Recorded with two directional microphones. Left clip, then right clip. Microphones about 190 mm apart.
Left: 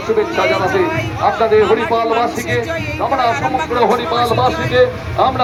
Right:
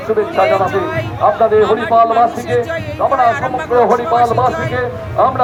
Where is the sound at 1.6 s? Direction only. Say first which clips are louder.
Right 3 dB; 10° right (ahead or behind).